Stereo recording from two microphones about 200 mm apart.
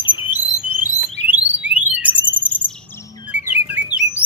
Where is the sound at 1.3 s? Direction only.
5° right (ahead or behind).